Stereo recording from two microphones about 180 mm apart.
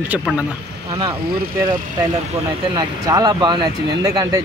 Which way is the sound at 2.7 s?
20° right (ahead or behind).